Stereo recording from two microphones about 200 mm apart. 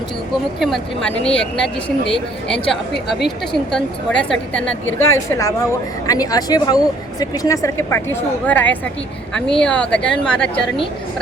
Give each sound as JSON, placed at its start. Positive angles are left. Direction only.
{"t": 1.2, "sound": "speech", "side_deg": 5}
{"t": 4.9, "sound": "a woman's voice", "side_deg": 90}
{"t": 5.3, "sound": "speech", "side_deg": 15}